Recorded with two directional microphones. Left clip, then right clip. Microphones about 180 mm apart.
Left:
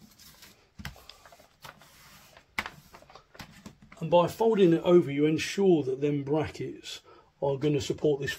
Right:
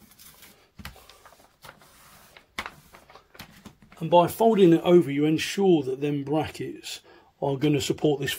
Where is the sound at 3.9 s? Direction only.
45° right (ahead or behind); by 7.0 s 25° right (ahead or behind).